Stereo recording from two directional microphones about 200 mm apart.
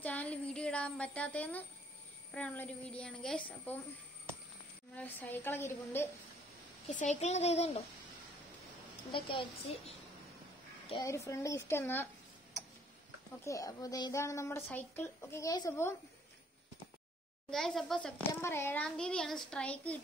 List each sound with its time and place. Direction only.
0.0 s child singing: 10° left (ahead or behind)
2.3 s a woman's voice: 10° left (ahead or behind)
4.9 s a woman's voice: 10° left (ahead or behind)
6.9 s speech: 35° left (ahead or behind)
9.1 s a woman's voice: 25° left (ahead or behind)
10.9 s a woman's voice: 15° left (ahead or behind)
13.4 s a woman's voice: 15° left (ahead or behind)
17.5 s a child's voice: centre (ahead or behind)